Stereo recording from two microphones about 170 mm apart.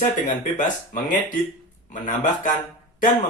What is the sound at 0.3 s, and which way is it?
Speech, 50° left (ahead or behind).